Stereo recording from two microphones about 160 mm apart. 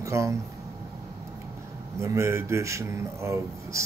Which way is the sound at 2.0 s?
15° right (ahead or behind).